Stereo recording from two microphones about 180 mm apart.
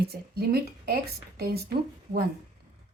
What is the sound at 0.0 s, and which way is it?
Speech, 60° right (ahead or behind).